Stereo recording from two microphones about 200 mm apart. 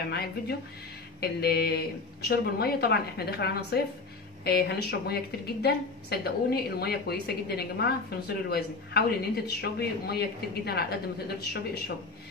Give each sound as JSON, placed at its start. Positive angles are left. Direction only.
{"t": 0.1, "sound": "a woman's voice", "side_deg": 55}